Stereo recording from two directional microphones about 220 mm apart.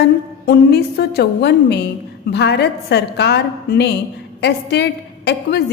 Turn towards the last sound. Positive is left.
turn(degrees=50)  # may be behind; listen again after turning